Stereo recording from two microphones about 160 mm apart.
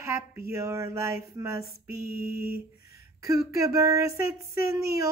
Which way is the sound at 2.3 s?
75° right (ahead or behind).